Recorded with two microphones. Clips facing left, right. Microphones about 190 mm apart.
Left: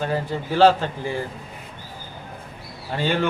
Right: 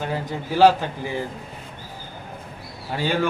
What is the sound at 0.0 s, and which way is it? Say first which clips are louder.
A man's voice: left 2 dB; 15° right (ahead or behind).